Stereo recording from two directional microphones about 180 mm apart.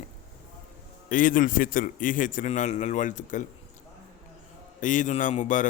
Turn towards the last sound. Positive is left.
turn(degrees=45)  # may be behind; listen again after turning